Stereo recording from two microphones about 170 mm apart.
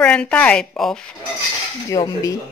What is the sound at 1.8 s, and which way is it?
Dishes, 20° left (ahead or behind).